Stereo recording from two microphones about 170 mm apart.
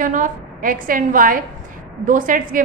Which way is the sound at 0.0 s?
50° right (ahead or behind).